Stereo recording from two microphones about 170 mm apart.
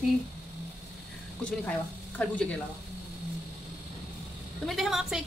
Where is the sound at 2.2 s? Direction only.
5° left (ahead or behind).